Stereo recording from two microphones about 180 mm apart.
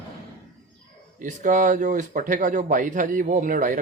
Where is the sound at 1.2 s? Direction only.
45° right (ahead or behind).